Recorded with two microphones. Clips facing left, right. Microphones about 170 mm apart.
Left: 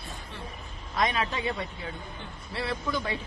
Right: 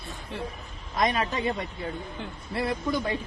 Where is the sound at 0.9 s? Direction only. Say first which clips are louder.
Right 2 dB; 40° right (ahead or behind).